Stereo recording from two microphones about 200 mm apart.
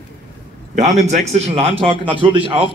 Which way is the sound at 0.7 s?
35° right (ahead or behind).